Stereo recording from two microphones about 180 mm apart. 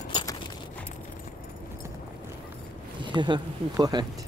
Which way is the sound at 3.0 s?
25° right (ahead or behind).